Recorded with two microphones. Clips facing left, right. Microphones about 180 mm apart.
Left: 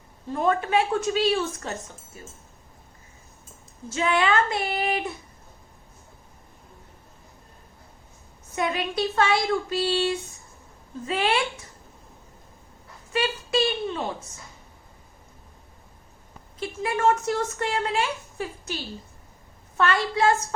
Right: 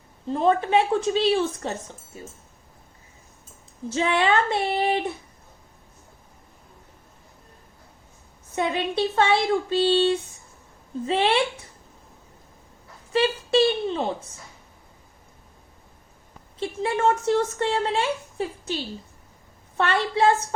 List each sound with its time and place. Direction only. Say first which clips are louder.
0.3 s speech: right 3 dB; 25° right (ahead or behind)
3.9 s speech: right 1 dB; 30° right (ahead or behind)
8.5 s speech: right 2 dB; 25° right (ahead or behind)
13.1 s speech: right 5 dB; 30° right (ahead or behind)
16.6 s speech: right 2 dB; 30° right (ahead or behind)